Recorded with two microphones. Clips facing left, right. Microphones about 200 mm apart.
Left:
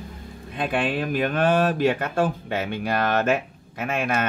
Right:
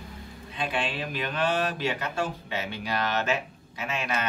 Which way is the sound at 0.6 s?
55° left (ahead or behind).